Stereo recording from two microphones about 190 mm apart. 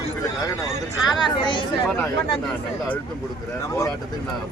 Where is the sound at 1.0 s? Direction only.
25° left (ahead or behind).